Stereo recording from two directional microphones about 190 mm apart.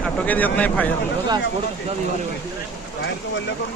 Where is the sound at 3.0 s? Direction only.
65° left (ahead or behind).